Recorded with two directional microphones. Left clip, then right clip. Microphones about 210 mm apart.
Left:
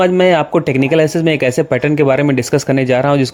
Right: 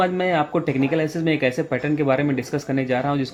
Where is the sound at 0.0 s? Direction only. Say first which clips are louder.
Left 9 dB; 45° left (ahead or behind).